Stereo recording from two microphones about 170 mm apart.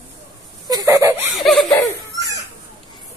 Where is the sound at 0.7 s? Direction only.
20° right (ahead or behind).